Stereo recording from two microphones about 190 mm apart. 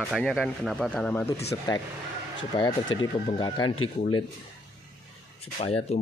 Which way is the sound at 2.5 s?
25° left (ahead or behind).